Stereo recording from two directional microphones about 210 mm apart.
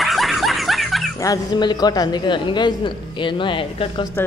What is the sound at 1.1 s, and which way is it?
A man's voice, 15° left (ahead or behind).